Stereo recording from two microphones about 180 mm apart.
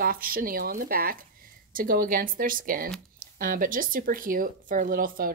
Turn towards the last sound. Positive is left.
turn(degrees=-50)  # may be behind; listen again after turning